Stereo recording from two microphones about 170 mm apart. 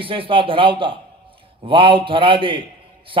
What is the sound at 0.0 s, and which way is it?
A man's voice, 30° right (ahead or behind).